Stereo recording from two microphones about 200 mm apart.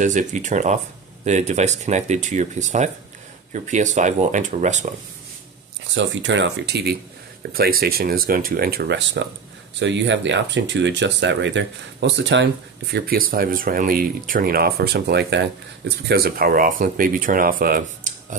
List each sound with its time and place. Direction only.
0.0 s speech: 40° right (ahead or behind)
5.9 s speech: 65° right (ahead or behind)
12.9 s speech: 45° right (ahead or behind)